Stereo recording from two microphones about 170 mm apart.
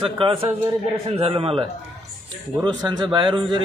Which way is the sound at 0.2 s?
30° right (ahead or behind).